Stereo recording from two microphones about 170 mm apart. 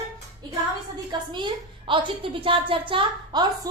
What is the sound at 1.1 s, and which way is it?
A woman's voice, 25° right (ahead or behind).